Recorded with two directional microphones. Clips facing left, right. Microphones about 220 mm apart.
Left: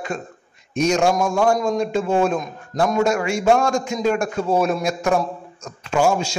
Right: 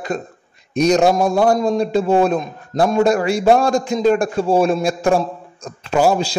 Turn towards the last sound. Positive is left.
turn(degrees=-35)  # may be behind; listen again after turning